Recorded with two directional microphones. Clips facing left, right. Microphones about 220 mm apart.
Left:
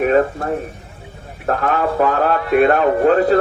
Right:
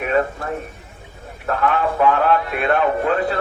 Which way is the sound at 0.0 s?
40° left (ahead or behind).